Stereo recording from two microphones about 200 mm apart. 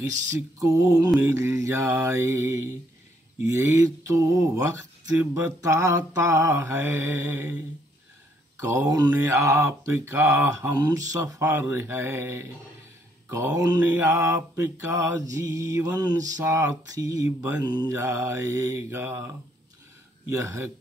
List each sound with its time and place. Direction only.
0.0 s mantra: 15° right (ahead or behind)
3.5 s mantra: 15° right (ahead or behind)
8.5 s mantra: 15° right (ahead or behind)